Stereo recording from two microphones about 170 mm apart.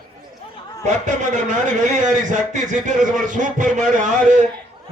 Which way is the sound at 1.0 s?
45° right (ahead or behind).